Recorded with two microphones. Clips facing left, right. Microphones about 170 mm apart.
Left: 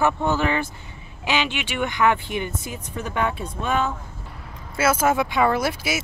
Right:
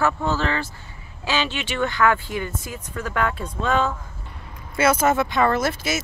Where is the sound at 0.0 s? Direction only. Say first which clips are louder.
Left 1 dB; 15° left (ahead or behind).